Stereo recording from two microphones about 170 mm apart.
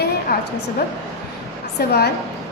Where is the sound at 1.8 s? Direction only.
70° left (ahead or behind).